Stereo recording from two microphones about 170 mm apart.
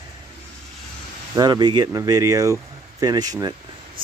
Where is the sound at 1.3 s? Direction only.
25° right (ahead or behind).